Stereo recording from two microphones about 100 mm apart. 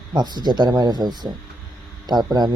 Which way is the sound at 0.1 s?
45° right (ahead or behind).